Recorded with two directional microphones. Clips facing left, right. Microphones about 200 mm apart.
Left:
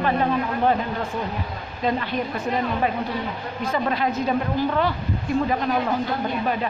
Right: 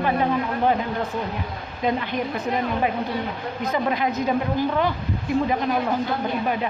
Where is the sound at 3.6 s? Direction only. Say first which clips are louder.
Even; 15° right (ahead or behind).